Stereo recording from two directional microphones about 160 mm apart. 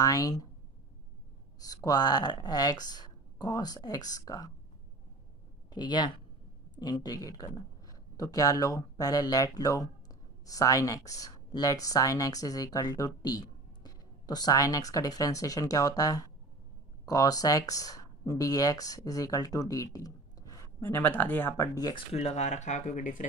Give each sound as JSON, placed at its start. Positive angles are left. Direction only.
{"t": 0.0, "sound": "speech", "side_deg": 20}
{"t": 1.6, "sound": "speech", "side_deg": 25}
{"t": 5.7, "sound": "speech", "side_deg": 30}
{"t": 22.1, "sound": "speech", "side_deg": 40}